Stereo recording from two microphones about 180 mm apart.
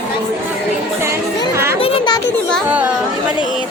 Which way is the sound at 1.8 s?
30° left (ahead or behind).